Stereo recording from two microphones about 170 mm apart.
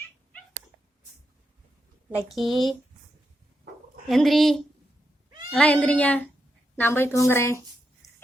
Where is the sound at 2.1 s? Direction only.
Centre (ahead or behind).